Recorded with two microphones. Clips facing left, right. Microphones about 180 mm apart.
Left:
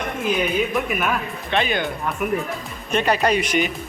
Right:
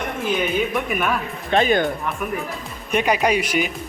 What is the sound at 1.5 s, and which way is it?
Speech, 45° right (ahead or behind).